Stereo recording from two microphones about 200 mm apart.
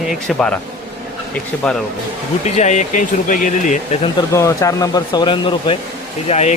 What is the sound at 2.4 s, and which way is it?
Speech, 35° left (ahead or behind).